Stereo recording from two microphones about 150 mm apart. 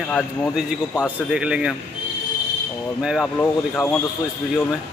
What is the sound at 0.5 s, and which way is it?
Speech, 5° right (ahead or behind).